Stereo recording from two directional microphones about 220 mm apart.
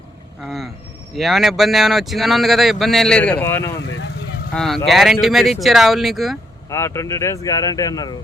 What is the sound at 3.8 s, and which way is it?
Vehicle, 55° left (ahead or behind).